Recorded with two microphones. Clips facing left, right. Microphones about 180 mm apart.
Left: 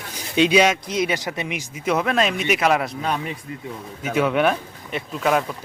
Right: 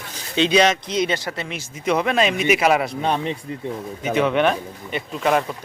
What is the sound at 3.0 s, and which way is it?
Speech, 25° right (ahead or behind).